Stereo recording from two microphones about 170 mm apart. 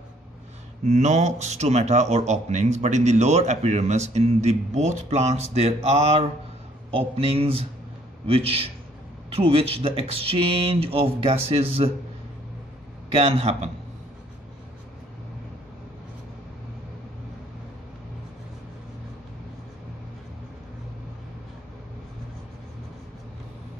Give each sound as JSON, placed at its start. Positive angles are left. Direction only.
{"t": 0.8, "sound": "a man's voice", "side_deg": -45}
{"t": 13.1, "sound": "a man's voice", "side_deg": -35}